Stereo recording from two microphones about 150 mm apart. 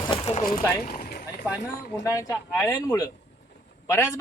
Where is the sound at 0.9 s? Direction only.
80° left.